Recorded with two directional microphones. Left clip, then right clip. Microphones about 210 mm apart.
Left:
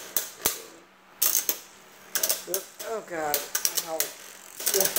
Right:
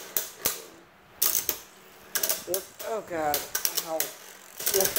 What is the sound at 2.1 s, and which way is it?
Mechanisms, centre (ahead or behind).